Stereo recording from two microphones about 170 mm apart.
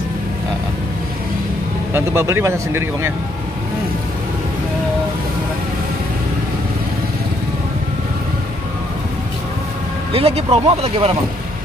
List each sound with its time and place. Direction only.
2.0 s speech: 15° right (ahead or behind)
10.1 s speech: 35° right (ahead or behind)